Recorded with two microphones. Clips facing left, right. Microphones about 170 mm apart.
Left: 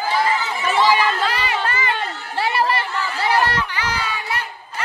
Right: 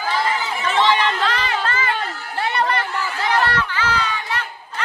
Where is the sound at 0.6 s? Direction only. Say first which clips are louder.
Left 1 dB; 10° left (ahead or behind).